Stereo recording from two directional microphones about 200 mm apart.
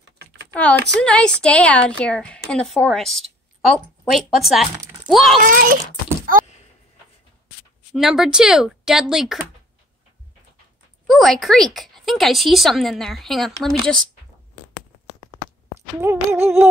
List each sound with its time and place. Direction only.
1.0 s a woman's voice: 5° left (ahead or behind)
5.4 s speech: 45° right (ahead or behind)
6.3 s a sound: 45° right (ahead or behind)
7.9 s a woman's voice: centre (ahead or behind)
11.1 s a woman's voice: centre (ahead or behind)
16.0 s humming: 10° right (ahead or behind)